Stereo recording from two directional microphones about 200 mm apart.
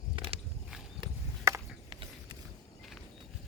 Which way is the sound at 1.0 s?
20° right (ahead or behind).